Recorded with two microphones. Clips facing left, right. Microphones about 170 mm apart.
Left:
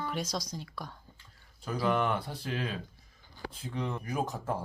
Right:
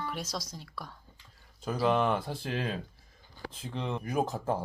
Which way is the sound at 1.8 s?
25° right (ahead or behind).